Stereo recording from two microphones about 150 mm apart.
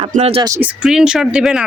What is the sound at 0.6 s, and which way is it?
Speech, 10° right (ahead or behind).